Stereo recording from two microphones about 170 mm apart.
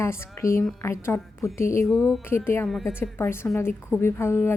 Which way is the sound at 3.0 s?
15° left (ahead or behind).